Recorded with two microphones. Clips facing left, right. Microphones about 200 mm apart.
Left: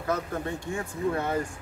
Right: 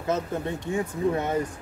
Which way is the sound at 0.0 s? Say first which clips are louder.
Right 2 dB; 25° right (ahead or behind).